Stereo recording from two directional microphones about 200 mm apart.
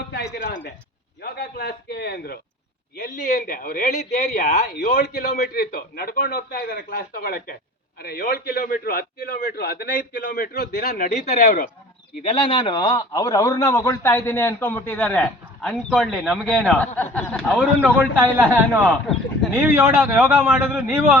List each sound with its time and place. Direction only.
0.3 s a sound: 50° left (ahead or behind)
1.2 s speech: 50° left (ahead or behind)
3.0 s speech: 40° left (ahead or behind)
12.4 s a man's voice: 25° left (ahead or behind); by 16.6 s 5° right (ahead or behind)
16.6 s a man's voice: 5° left (ahead or behind)
17.7 s a man's voice: 10° right (ahead or behind)